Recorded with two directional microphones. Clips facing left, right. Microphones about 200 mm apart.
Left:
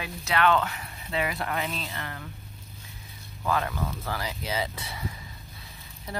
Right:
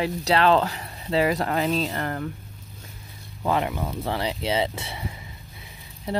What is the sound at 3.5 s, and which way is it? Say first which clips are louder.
Speech: right 4 dB; 20° right (ahead or behind).